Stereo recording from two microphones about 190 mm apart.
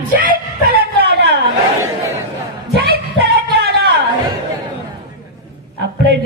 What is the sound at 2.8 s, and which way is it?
Music, 55° right (ahead or behind).